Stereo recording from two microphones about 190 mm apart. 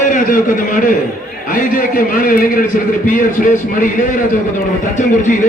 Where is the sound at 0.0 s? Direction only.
45° left (ahead or behind).